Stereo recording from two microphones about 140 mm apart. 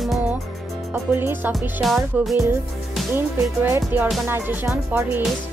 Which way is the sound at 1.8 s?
Centre (ahead or behind).